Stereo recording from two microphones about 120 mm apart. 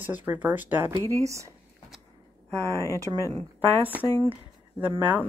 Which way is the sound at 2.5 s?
25° right (ahead or behind).